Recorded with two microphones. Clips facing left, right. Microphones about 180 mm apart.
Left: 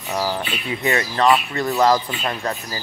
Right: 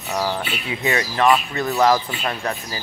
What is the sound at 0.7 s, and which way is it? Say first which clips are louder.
Speech: left 1 dB; 15° right (ahead or behind).